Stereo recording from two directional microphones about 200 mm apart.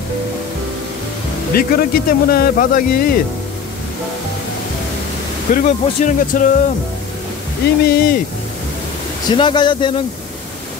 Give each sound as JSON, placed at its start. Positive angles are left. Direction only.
{"t": 1.5, "sound": "speech", "side_deg": 45}
{"t": 5.5, "sound": "speech", "side_deg": 40}
{"t": 7.8, "sound": "speech", "side_deg": 50}
{"t": 9.3, "sound": "speech", "side_deg": 25}